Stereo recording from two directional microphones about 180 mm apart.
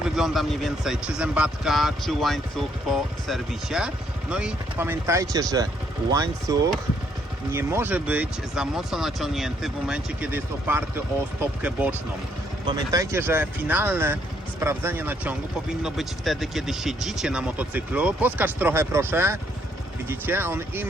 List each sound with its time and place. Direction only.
0.0 s speech: centre (ahead or behind)